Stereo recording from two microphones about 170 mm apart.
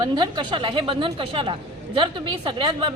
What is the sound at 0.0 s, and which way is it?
A woman's voice, 25° right (ahead or behind).